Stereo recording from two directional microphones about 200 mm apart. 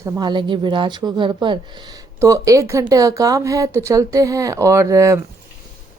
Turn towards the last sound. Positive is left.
turn(degrees=-15)  # may be behind; listen again after turning